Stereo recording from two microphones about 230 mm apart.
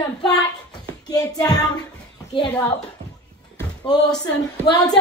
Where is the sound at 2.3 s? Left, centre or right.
Left.